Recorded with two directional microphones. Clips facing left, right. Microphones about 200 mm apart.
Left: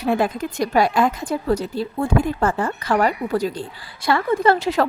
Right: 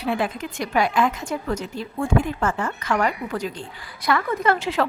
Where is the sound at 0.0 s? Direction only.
45° left (ahead or behind).